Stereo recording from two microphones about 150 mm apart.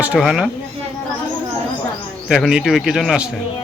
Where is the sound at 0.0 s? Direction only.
5° right (ahead or behind).